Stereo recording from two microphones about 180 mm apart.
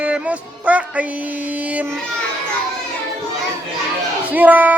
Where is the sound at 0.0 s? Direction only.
5° right (ahead or behind).